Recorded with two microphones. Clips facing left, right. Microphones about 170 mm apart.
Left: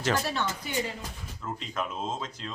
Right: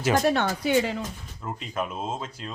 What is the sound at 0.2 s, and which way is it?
Speech, 60° right (ahead or behind).